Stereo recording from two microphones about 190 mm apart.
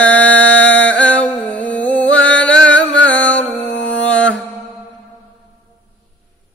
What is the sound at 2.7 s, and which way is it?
Music, 75° left (ahead or behind).